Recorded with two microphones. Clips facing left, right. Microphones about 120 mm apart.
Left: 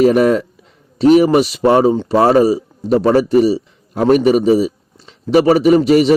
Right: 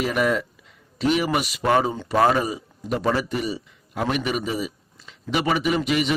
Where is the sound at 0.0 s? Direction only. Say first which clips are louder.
Left 11 dB; 40° left (ahead or behind).